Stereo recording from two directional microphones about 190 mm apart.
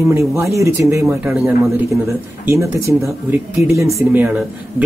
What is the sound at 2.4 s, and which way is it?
A man's voice, 15° right (ahead or behind).